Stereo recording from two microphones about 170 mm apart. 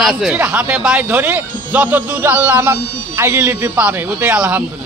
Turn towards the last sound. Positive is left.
turn(degrees=-10)  # may be behind; listen again after turning